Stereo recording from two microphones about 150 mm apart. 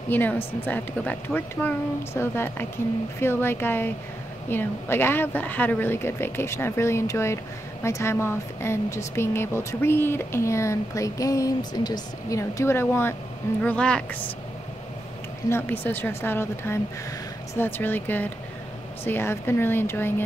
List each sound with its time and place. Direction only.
0.1 s speech: 10° left (ahead or behind)
15.5 s speech: 15° left (ahead or behind)